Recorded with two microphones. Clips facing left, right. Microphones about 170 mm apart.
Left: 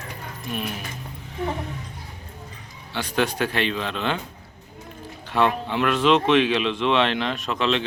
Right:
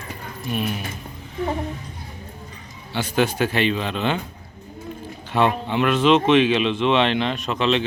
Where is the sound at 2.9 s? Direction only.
5° right (ahead or behind).